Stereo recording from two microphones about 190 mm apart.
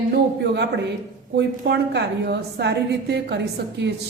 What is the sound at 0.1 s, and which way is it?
Speech, 65° right (ahead or behind).